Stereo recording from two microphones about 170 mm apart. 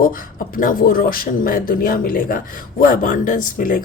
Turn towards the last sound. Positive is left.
turn(degrees=50)  # may be behind; listen again after turning